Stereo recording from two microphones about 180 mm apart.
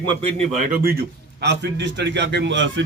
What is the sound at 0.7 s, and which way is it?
A man's voice, 55° right (ahead or behind).